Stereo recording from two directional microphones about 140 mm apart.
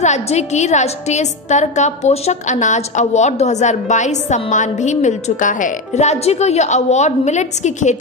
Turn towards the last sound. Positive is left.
turn(degrees=55)  # may be behind; listen again after turning